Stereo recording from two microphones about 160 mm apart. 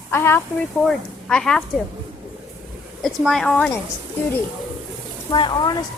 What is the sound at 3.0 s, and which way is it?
Speech, centre (ahead or behind).